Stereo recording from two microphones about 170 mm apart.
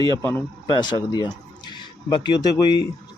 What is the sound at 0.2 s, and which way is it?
Speech, 15° left (ahead or behind).